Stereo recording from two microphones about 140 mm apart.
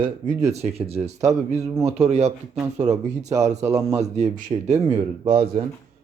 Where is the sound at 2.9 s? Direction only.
25° right (ahead or behind).